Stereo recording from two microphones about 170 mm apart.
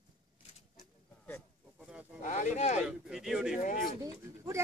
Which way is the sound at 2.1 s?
45° left (ahead or behind).